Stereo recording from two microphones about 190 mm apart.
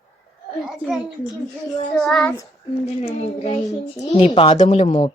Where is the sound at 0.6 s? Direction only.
5° right (ahead or behind).